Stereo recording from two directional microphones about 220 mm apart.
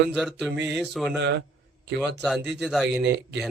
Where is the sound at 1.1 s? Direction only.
55° right (ahead or behind).